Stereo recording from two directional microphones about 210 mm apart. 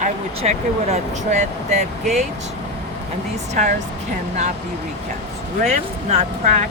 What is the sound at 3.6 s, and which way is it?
Speech, 35° right (ahead or behind).